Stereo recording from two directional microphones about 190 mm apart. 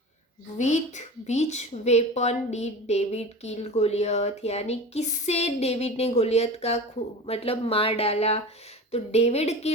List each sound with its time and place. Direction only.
0.6 s a woman's voice: 40° left (ahead or behind)